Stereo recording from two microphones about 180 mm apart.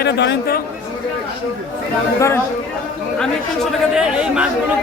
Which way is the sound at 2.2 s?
15° left (ahead or behind).